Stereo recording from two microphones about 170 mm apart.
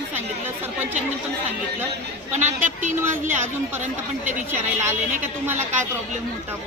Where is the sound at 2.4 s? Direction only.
45° right (ahead or behind).